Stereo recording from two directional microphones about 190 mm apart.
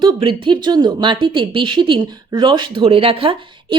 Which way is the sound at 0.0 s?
25° right (ahead or behind).